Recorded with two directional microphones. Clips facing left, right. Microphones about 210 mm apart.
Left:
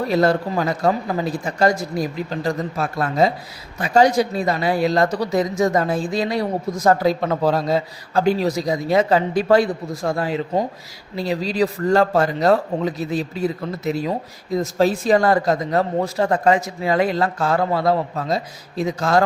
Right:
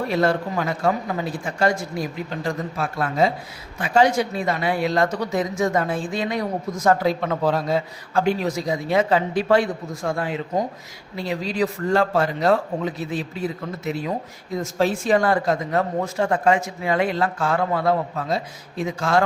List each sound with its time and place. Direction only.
0.1 s speech: 40° left (ahead or behind)